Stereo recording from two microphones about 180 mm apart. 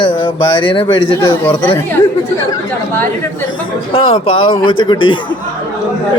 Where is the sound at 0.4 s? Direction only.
25° left (ahead or behind).